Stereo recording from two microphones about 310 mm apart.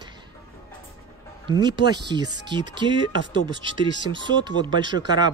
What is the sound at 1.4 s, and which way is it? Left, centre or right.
Speech, centre.